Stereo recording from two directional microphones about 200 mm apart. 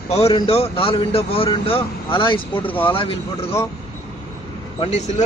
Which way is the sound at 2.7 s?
10° left (ahead or behind).